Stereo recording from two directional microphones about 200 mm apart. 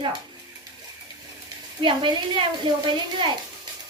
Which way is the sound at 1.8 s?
25° right (ahead or behind).